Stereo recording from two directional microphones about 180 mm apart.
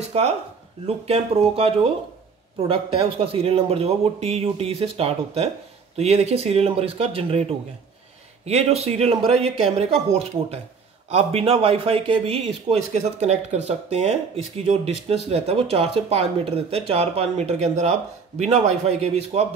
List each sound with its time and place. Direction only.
0.0 s a sound: 35° right (ahead or behind)
0.8 s speech: 35° right (ahead or behind)
11.1 s speech: 35° right (ahead or behind)